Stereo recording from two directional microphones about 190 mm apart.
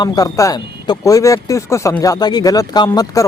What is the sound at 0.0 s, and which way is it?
Speech, 20° left (ahead or behind).